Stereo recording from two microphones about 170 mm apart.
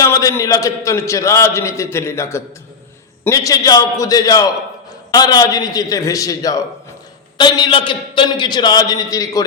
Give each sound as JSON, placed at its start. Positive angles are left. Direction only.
{"t": 0.0, "sound": "a man's voice", "side_deg": 20}